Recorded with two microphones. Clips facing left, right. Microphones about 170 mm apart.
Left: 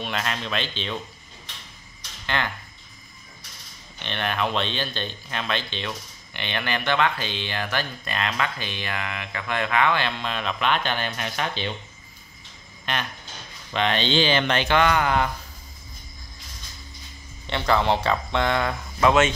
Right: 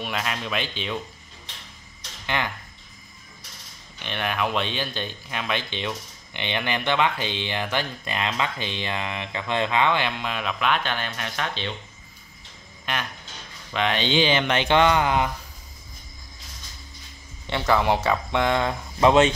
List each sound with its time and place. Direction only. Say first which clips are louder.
0.0 s speech: even; 5° right (ahead or behind)
2.2 s speech: even; 15° right (ahead or behind)
4.0 s speech: even; 10° right (ahead or behind)
13.7 s speech: even; 10° right (ahead or behind)
17.5 s speech: even; 10° right (ahead or behind); by 19.3 s 30° right (ahead or behind)